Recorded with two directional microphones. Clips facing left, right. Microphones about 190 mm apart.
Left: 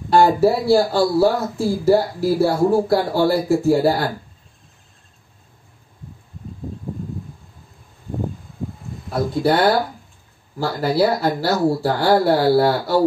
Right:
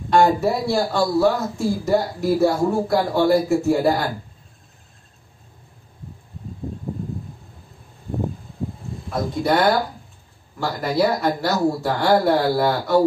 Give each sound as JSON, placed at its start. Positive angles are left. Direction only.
{"t": 0.1, "sound": "speech", "side_deg": 30}
{"t": 9.4, "sound": "speech", "side_deg": 35}